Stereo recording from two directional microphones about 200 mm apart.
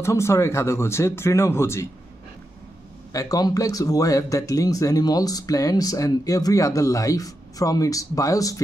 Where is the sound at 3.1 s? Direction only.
15° left (ahead or behind).